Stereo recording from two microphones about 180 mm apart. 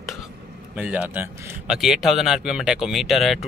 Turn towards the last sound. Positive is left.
turn(degrees=0)  # may be behind; listen again after turning